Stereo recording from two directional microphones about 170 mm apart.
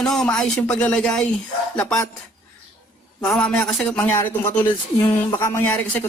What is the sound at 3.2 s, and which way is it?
Speech, 5° left (ahead or behind).